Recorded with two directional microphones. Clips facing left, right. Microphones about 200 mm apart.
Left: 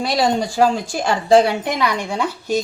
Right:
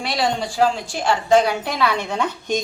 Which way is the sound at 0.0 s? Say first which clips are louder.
Left 4 dB; 40° left (ahead or behind).